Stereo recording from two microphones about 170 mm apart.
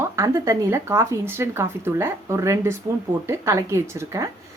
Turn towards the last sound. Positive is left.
turn(degrees=-15)  # may be behind; listen again after turning